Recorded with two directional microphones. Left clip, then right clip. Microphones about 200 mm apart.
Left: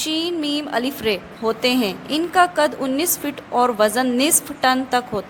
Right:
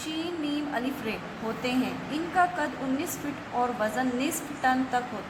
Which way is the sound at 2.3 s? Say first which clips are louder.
Left 9 dB; 55° left (ahead or behind).